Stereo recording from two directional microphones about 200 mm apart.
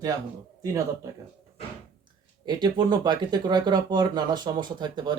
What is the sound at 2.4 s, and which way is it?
Speech, 20° right (ahead or behind).